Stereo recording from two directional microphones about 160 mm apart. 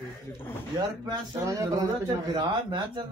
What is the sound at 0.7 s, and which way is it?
Speech, 25° right (ahead or behind).